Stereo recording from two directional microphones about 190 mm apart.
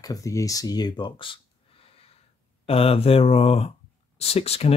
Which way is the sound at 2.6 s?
30° left (ahead or behind).